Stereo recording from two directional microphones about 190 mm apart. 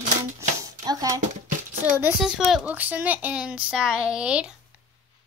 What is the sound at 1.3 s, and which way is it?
Child singing, 45° right (ahead or behind).